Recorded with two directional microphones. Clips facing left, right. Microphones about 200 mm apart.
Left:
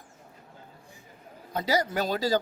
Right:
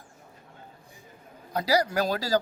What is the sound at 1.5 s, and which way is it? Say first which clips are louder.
Speech: right 2 dB; 25° left (ahead or behind).